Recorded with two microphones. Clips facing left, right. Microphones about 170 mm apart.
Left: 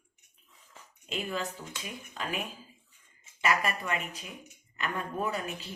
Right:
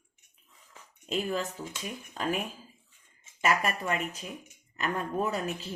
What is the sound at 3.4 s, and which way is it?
Speech, 45° right (ahead or behind).